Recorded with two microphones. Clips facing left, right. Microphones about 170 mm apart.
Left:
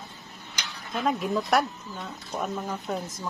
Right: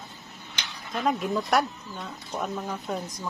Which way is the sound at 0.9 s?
Centre (ahead or behind).